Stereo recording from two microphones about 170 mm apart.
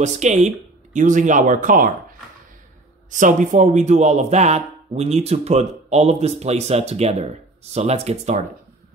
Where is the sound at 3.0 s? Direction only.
50° right (ahead or behind).